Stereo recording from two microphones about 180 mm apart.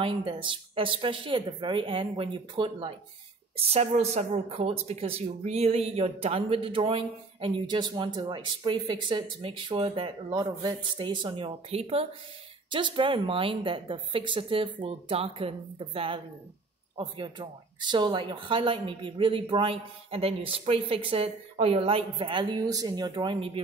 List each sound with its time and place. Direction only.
0.0 s speech: 30° right (ahead or behind)